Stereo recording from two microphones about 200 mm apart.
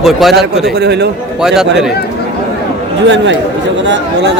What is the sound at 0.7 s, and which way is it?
Speech, 55° right (ahead or behind).